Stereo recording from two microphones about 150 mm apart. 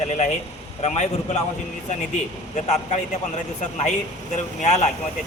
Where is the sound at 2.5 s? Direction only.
50° left (ahead or behind).